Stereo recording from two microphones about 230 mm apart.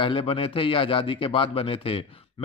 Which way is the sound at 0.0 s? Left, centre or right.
Left.